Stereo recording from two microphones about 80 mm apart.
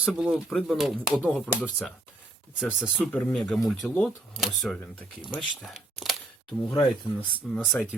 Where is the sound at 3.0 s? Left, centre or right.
Centre.